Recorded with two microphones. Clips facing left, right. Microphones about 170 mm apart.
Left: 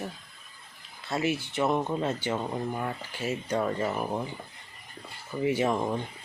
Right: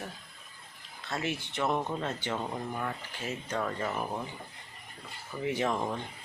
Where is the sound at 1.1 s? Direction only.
5° left (ahead or behind).